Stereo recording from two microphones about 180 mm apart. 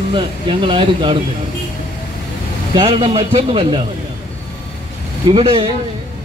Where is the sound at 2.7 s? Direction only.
30° right (ahead or behind).